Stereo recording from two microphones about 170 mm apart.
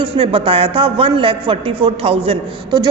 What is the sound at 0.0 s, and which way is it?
A man's voice, 30° right (ahead or behind).